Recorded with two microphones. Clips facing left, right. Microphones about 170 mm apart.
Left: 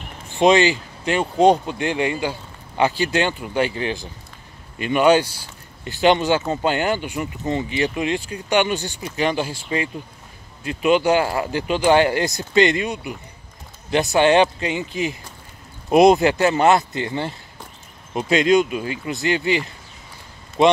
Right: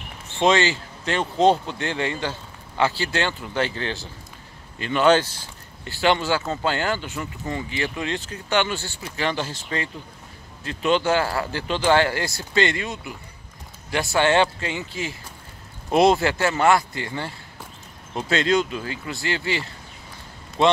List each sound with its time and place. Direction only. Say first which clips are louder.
0.3 s speech: left 4 dB; 15° left (ahead or behind)